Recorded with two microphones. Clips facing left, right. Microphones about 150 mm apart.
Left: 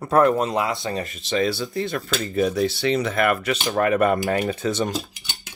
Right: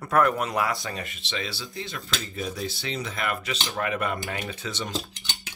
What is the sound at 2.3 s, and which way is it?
Speech, 70° left (ahead or behind).